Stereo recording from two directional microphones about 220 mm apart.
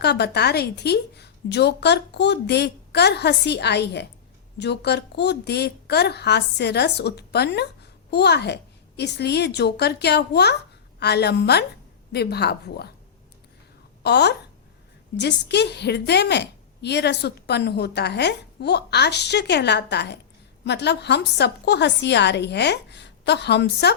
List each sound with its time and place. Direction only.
0.0 s a woman's voice: 50° left (ahead or behind)
14.0 s a woman's voice: 50° left (ahead or behind)